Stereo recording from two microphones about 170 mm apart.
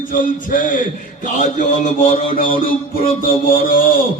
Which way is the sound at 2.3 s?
55° left (ahead or behind).